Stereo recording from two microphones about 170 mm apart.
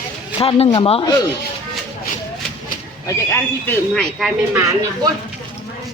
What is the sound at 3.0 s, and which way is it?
Speech, 15° left (ahead or behind).